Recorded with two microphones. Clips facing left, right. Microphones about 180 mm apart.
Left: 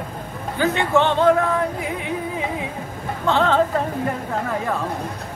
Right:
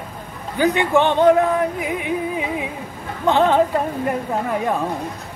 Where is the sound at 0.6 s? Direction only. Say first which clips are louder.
Right 2 dB; 15° right (ahead or behind).